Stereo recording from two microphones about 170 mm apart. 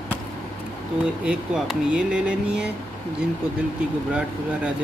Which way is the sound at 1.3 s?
5° right (ahead or behind).